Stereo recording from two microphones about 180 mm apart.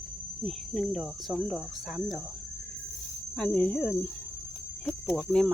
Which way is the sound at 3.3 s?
5° left (ahead or behind).